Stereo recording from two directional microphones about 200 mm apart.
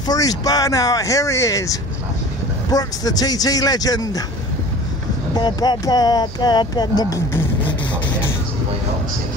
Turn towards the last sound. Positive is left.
turn(degrees=20)  # may be behind; listen again after turning